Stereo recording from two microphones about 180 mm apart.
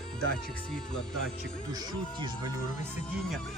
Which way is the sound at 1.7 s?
20° right (ahead or behind).